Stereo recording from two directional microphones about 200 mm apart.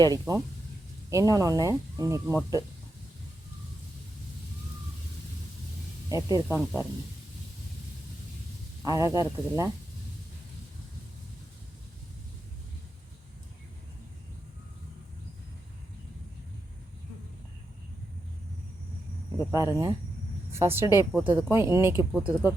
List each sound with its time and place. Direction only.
0.0 s speech: 20° right (ahead or behind)
6.1 s speech: 15° right (ahead or behind)
8.8 s speech: 15° right (ahead or behind)
19.5 s speech: 15° right (ahead or behind)